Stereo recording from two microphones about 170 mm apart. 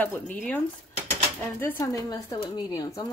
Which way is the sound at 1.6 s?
15° left (ahead or behind).